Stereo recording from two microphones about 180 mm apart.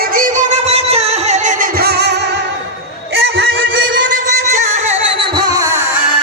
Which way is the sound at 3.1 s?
70° right (ahead or behind).